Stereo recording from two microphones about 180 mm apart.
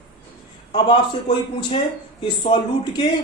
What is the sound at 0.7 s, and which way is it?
Speech, 30° left (ahead or behind).